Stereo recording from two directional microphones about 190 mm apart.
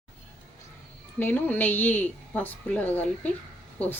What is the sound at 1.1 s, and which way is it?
A woman's voice, 10° left (ahead or behind).